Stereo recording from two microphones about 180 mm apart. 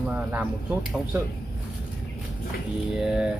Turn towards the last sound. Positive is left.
turn(degrees=-5)  # may be behind; listen again after turning